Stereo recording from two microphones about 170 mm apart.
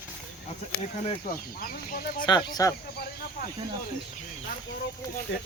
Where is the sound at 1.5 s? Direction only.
60° left (ahead or behind).